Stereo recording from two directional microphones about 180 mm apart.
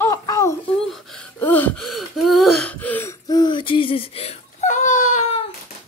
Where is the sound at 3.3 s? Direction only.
25° left (ahead or behind).